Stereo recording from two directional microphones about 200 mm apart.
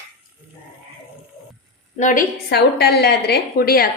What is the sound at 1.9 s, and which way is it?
A woman's voice, 40° left (ahead or behind).